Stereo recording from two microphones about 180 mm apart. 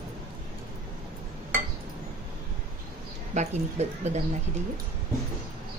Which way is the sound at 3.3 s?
40° right (ahead or behind).